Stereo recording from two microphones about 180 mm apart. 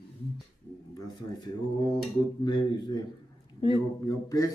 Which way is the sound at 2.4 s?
25° left (ahead or behind).